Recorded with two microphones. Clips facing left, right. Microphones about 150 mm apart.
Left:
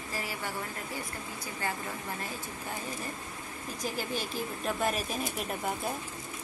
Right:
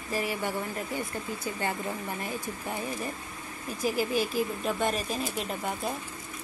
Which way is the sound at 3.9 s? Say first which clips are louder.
Right 8 dB; 5° right (ahead or behind).